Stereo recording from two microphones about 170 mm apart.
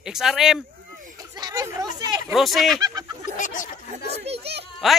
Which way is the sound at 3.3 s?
50° left (ahead or behind).